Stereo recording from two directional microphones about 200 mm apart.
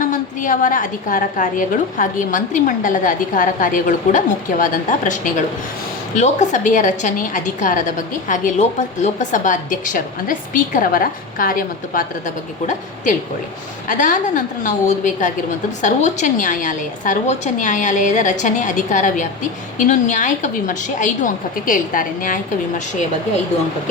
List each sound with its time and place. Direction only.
0.0 s a woman's voice: 40° left (ahead or behind)
13.8 s a woman's voice: 40° left (ahead or behind)